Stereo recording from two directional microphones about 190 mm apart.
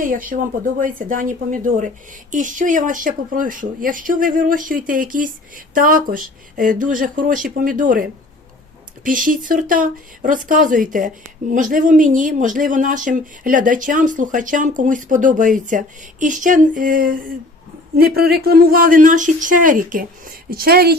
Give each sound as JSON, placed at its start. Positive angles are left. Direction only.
{"t": 0.0, "sound": "speech", "side_deg": -45}
{"t": 9.0, "sound": "speech", "side_deg": -45}